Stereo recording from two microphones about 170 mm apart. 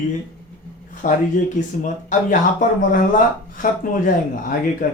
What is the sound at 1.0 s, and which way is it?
Speech, 50° left (ahead or behind).